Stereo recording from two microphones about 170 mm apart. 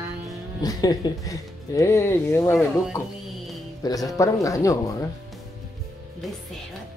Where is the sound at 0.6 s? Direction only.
20° left (ahead or behind).